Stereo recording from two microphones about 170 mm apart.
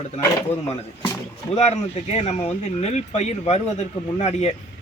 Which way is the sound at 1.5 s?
40° left (ahead or behind).